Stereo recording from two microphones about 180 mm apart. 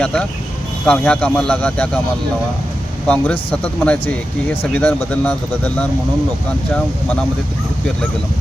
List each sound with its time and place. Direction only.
0.0 s speech: 5° left (ahead or behind)
3.1 s speech: 10° left (ahead or behind)